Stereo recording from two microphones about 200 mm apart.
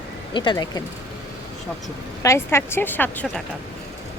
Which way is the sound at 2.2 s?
15° left (ahead or behind).